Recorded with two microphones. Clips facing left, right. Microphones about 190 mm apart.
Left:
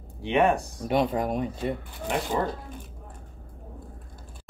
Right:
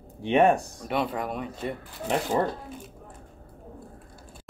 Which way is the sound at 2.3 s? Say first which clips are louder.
Right 2 dB; 25° right (ahead or behind).